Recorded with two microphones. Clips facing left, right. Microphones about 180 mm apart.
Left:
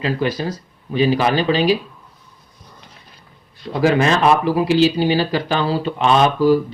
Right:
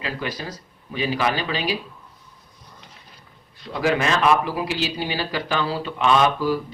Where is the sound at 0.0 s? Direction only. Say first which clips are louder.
Left 9 dB; 30° left (ahead or behind).